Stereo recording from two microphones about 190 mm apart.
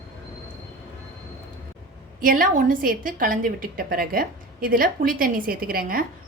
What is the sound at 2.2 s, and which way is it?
A woman's voice, 45° right (ahead or behind).